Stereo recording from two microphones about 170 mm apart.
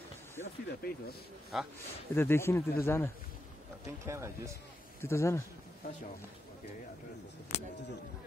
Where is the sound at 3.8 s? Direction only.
15° right (ahead or behind).